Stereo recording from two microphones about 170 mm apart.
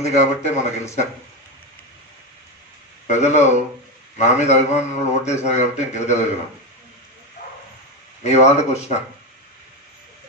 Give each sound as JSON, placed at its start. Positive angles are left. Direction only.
{"t": 0.0, "sound": "a man's voice", "side_deg": 40}
{"t": 3.1, "sound": "a man's voice", "side_deg": 40}
{"t": 8.2, "sound": "a man's voice", "side_deg": 40}